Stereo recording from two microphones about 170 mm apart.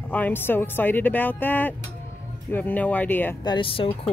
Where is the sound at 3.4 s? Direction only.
30° left (ahead or behind).